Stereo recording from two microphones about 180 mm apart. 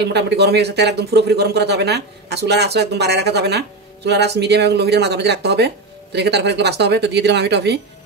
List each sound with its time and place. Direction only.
0.0 s speech: 70° right (ahead or behind)